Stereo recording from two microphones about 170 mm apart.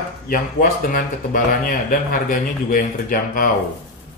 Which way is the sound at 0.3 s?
55° left (ahead or behind).